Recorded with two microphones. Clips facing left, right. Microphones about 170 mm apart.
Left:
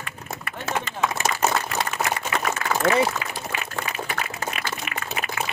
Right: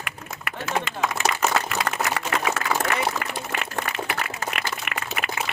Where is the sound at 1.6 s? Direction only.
80° right.